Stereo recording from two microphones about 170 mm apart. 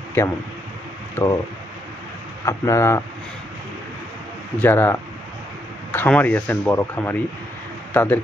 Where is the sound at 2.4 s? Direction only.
20° left (ahead or behind).